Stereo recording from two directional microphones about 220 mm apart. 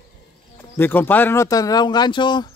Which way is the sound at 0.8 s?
10° left (ahead or behind).